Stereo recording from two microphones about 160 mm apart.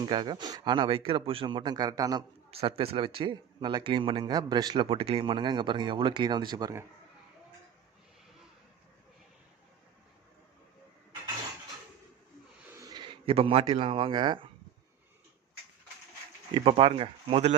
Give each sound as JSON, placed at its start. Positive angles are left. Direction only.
{"t": 0.0, "sound": "speech", "side_deg": -30}
{"t": 2.5, "sound": "speech", "side_deg": -35}
{"t": 12.7, "sound": "a man's voice", "side_deg": -25}
{"t": 16.6, "sound": "speech", "side_deg": -35}